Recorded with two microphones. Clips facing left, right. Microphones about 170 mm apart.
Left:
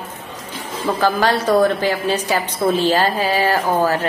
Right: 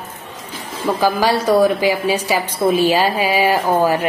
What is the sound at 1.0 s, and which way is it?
A woman's voice, 10° right (ahead or behind).